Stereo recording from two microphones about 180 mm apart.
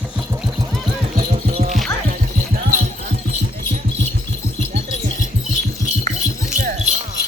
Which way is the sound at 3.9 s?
75° right (ahead or behind).